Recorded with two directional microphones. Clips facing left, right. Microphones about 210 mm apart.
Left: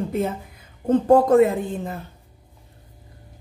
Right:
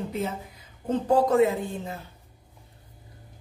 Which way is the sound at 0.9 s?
50° left (ahead or behind).